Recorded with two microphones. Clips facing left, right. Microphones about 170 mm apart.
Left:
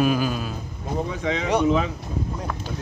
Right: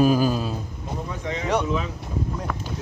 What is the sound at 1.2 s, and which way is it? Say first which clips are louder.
Speech: left 3 dB; 90° left.